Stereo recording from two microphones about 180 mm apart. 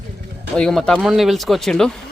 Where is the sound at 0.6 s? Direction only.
5° left (ahead or behind).